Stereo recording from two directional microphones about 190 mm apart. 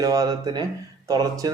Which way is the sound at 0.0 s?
20° right (ahead or behind).